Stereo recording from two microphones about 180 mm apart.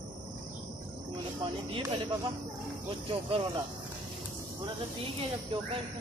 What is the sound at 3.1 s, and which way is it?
Speech, 30° right (ahead or behind).